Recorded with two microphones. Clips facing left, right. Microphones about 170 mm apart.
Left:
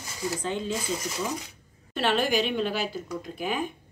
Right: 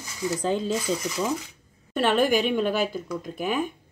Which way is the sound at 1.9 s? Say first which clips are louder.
Right 4 dB; 50° right (ahead or behind).